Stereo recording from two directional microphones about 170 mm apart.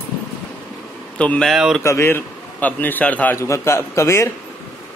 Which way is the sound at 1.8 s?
15° left (ahead or behind).